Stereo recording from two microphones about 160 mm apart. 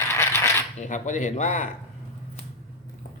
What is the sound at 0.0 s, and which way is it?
Coin, 15° left (ahead or behind).